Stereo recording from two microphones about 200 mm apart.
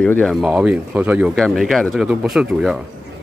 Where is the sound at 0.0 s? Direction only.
5° left (ahead or behind).